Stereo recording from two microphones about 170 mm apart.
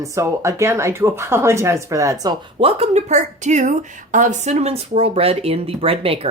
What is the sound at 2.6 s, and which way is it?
Speech, 40° right (ahead or behind).